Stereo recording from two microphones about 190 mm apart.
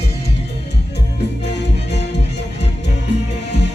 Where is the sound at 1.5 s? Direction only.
65° left (ahead or behind).